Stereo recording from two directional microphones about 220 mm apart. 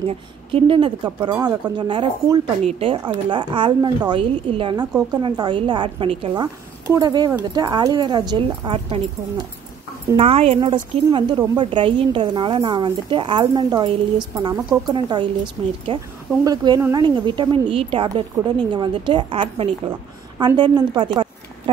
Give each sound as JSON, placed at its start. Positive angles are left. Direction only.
{"t": 0.1, "sound": "a woman's voice", "side_deg": -25}